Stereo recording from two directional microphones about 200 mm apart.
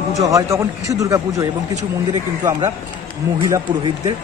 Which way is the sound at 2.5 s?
20° right (ahead or behind).